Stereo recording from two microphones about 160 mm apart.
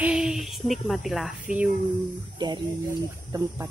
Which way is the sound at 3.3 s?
20° right (ahead or behind).